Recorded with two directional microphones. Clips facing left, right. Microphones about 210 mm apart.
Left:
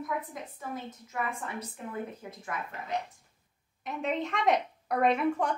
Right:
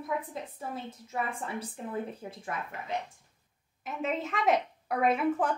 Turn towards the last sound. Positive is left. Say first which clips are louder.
# even
turn(degrees=-5)  # may be behind; listen again after turning